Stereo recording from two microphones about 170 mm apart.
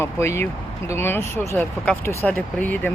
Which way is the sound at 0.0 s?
15° left (ahead or behind).